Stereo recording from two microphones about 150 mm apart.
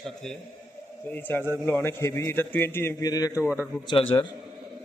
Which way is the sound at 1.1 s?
15° left (ahead or behind).